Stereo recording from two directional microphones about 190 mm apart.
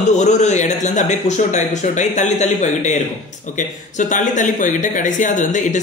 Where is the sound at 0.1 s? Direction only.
40° left (ahead or behind).